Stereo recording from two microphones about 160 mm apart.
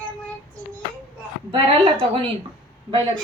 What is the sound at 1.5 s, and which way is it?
Speech, 30° right (ahead or behind).